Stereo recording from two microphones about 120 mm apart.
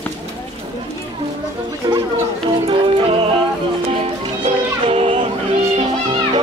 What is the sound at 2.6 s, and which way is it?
Music, 50° right (ahead or behind).